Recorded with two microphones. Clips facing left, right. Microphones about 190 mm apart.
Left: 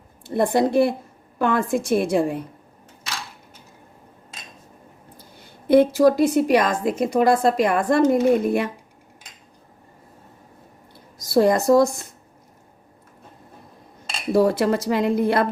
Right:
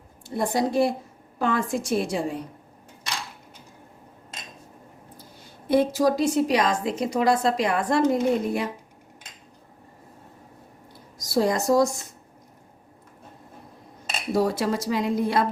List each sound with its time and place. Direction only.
0.3 s a woman's voice: 55° left (ahead or behind)
5.6 s a woman's voice: 60° left (ahead or behind)
11.3 s a woman's voice: 55° left (ahead or behind)
14.3 s a woman's voice: 55° left (ahead or behind)